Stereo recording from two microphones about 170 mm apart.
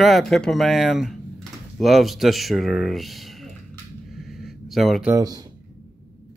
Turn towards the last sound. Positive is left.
turn(degrees=-20)  # may be behind; listen again after turning